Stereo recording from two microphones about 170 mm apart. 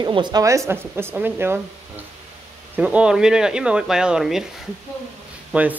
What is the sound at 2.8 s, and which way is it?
Speech, 5° right (ahead or behind).